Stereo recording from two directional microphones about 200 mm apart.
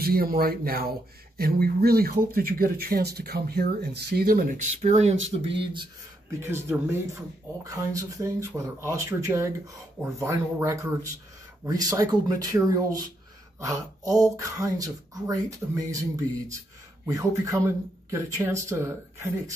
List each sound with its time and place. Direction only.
0.0 s speech: 50° right (ahead or behind)
5.5 s speech: 25° right (ahead or behind)
6.4 s speech: 10° right (ahead or behind)